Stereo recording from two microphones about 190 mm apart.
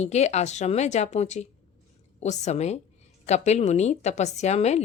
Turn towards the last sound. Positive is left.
turn(degrees=35)  # may be behind; listen again after turning